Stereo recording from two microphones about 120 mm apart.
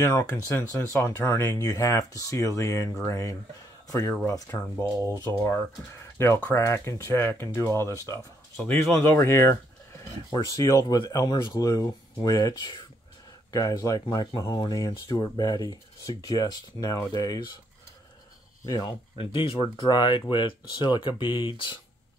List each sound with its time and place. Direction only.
0.0 s speech: 25° left (ahead or behind)
8.5 s speech: 5° left (ahead or behind)
9.0 s speech: 20° left (ahead or behind)
18.7 s speech: 35° left (ahead or behind)
19.1 s speech: 45° left (ahead or behind)